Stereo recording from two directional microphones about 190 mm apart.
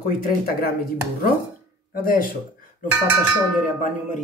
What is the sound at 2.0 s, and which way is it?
Speech, 50° left (ahead or behind).